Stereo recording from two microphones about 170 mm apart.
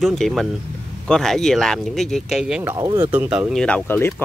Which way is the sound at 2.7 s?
20° right (ahead or behind).